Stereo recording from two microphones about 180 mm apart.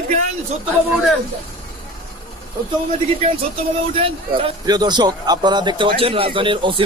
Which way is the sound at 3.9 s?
30° right (ahead or behind).